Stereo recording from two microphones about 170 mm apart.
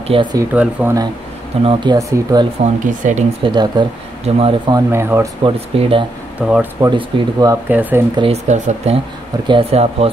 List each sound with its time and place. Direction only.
0.1 s speech: 25° right (ahead or behind)
0.5 s speech: 10° right (ahead or behind)
1.6 s speech: 30° right (ahead or behind)
2.0 s speech: 20° right (ahead or behind)
2.6 s speech: 50° right (ahead or behind)
3.4 s speech: 25° right (ahead or behind)
4.7 s speech: 15° right (ahead or behind)
5.4 s speech: 30° right (ahead or behind)
6.4 s speech: 5° right (ahead or behind)
6.9 s speech: 25° right (ahead or behind)
7.6 s speech: 10° right (ahead or behind)
8.2 s speech: 40° right (ahead or behind)
9.5 s speech: 35° right (ahead or behind)